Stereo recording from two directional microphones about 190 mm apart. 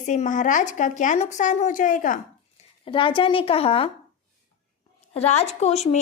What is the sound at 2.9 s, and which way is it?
A woman's voice, 25° left (ahead or behind).